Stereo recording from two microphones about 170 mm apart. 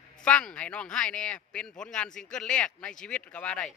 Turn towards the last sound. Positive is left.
turn(degrees=5)  # may be behind; listen again after turning